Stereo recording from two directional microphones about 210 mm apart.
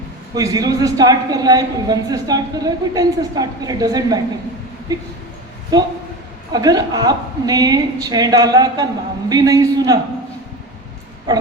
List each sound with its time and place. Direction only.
0.3 s a woman's voice: 20° right (ahead or behind)